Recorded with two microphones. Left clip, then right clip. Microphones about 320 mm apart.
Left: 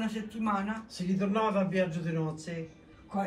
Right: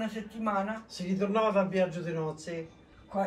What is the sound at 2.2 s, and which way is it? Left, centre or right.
Speech, right.